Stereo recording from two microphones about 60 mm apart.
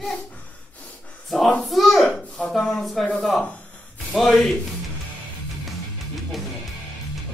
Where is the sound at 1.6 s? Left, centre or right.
Centre.